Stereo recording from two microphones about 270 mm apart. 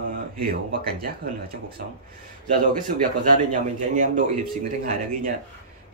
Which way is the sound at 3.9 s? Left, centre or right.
Right.